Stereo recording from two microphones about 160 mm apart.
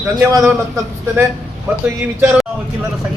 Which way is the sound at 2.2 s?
5° right (ahead or behind).